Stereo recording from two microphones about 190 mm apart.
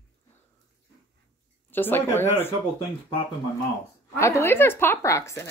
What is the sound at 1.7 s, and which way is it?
Speech, 10° left (ahead or behind).